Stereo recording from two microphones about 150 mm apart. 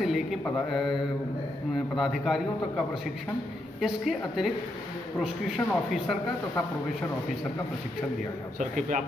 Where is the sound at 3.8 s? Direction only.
Centre (ahead or behind).